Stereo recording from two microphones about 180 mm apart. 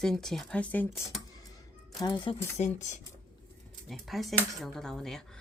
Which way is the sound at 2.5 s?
40° left (ahead or behind).